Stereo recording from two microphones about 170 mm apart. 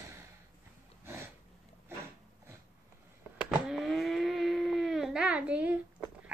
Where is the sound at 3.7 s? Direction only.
Centre (ahead or behind).